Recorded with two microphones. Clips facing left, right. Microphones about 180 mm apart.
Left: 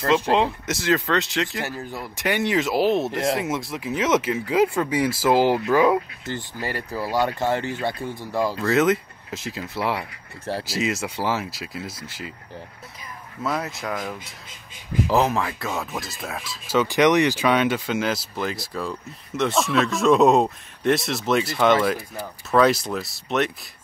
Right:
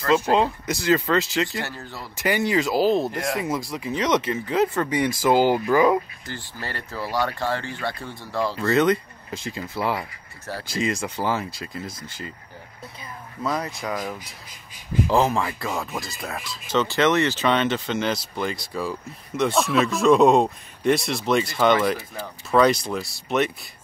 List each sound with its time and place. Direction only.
0.3 s speech: centre (ahead or behind)
1.6 s speech: 15° left (ahead or behind)
2.1 s speech: centre (ahead or behind)
3.1 s speech: 20° left (ahead or behind)
3.3 s speech: centre (ahead or behind)
6.2 s speech: 20° left (ahead or behind)
8.5 s speech: centre (ahead or behind)
13.4 s speech: 5° left (ahead or behind)
16.8 s speech: 15° left (ahead or behind)